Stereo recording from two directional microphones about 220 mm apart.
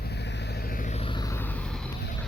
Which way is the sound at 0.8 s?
30° left (ahead or behind).